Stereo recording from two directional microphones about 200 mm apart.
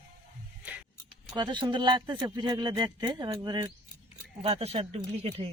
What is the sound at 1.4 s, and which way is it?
Speech, 20° right (ahead or behind).